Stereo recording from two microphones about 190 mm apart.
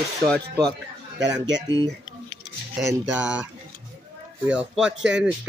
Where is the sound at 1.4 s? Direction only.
70° right (ahead or behind).